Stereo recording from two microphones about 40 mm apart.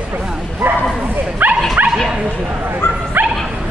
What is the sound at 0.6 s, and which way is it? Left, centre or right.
Bow-wow, right.